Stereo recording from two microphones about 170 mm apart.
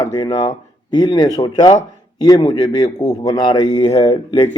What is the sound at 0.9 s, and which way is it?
Speech, 25° left (ahead or behind).